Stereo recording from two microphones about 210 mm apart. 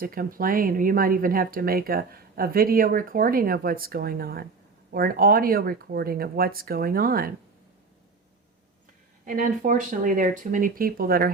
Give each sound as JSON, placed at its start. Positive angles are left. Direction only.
{"t": 0.0, "sound": "speech", "side_deg": -45}
{"t": 9.2, "sound": "speech", "side_deg": -40}